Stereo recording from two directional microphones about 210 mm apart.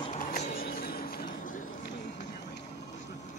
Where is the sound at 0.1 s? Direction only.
35° left (ahead or behind).